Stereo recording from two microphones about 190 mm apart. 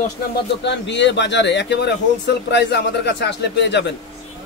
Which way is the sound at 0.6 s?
70° left (ahead or behind).